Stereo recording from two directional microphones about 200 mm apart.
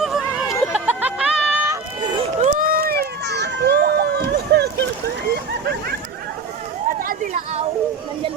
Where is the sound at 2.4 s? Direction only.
40° right (ahead or behind).